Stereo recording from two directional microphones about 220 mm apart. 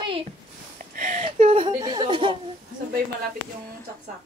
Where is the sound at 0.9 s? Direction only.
35° right (ahead or behind).